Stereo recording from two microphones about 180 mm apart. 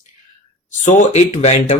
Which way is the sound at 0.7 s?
40° left (ahead or behind).